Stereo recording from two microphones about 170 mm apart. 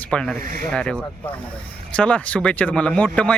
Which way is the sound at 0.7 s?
5° left (ahead or behind).